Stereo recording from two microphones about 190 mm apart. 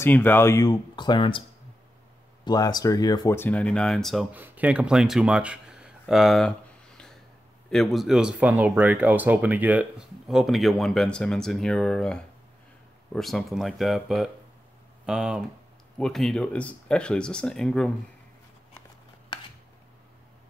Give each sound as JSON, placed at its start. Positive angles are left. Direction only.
{"t": 0.0, "sound": "speech", "side_deg": 10}
{"t": 2.4, "sound": "speech", "side_deg": 20}
{"t": 7.7, "sound": "speech", "side_deg": 0}